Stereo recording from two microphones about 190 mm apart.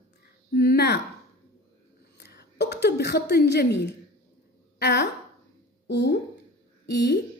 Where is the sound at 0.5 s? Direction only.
55° left (ahead or behind).